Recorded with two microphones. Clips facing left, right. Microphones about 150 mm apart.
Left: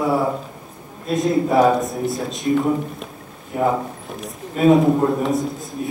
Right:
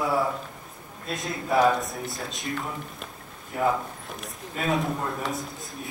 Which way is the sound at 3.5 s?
25° left (ahead or behind).